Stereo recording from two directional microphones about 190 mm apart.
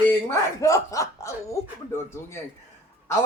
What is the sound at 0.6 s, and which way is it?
Speech, 15° left (ahead or behind).